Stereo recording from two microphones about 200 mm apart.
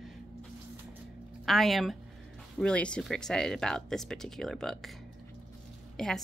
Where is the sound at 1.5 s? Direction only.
Centre (ahead or behind).